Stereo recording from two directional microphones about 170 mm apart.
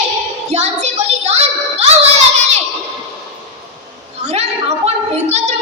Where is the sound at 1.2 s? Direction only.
40° right (ahead or behind).